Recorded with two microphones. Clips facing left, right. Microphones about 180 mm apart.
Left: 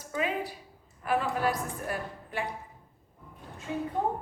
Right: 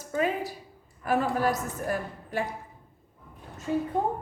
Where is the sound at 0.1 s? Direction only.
40° right (ahead or behind).